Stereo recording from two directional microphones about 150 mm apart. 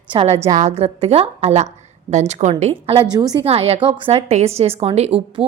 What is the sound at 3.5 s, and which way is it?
A woman's voice, 40° right (ahead or behind).